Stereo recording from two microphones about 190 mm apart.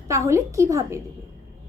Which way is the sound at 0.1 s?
15° right (ahead or behind).